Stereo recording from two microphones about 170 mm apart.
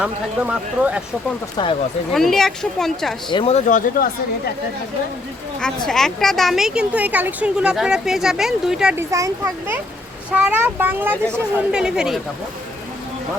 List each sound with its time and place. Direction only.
0.0 s a woman's voice: 5° right (ahead or behind)
1.6 s speech: 25° left (ahead or behind)
2.1 s a woman's voice: centre (ahead or behind)
3.2 s speech: 30° left (ahead or behind)
3.5 s speech: 50° left (ahead or behind)
5.5 s a woman's voice: 5° left (ahead or behind)
9.0 s a child's voice: 20° right (ahead or behind)